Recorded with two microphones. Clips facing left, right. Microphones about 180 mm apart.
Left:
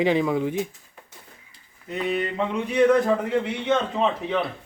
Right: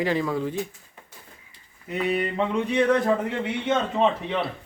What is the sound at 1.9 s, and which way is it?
A man's voice, 5° right (ahead or behind).